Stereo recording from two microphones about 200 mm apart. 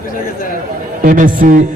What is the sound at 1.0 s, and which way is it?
Speech, 40° right (ahead or behind).